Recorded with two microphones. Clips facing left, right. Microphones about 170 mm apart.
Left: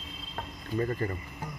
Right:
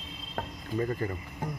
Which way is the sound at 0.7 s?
10° right (ahead or behind).